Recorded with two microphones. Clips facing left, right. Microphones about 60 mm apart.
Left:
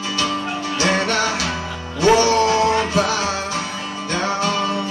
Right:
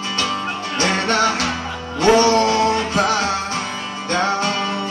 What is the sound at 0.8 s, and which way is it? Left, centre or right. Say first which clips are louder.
Music: right 2 dB; right.